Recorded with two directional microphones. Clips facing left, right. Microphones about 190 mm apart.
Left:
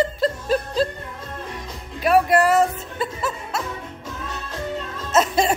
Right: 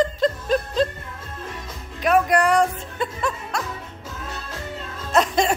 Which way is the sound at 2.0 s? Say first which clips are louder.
Left 2 dB; 5° left (ahead or behind).